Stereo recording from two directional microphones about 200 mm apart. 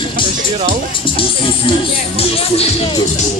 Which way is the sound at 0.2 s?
25° left (ahead or behind).